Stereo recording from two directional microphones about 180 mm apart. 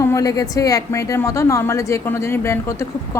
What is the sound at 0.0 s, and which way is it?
A woman's voice, 15° left (ahead or behind).